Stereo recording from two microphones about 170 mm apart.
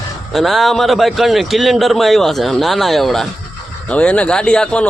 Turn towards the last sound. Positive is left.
turn(degrees=5)  # may be behind; listen again after turning